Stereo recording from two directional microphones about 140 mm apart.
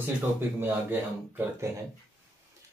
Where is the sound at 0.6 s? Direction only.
15° right (ahead or behind).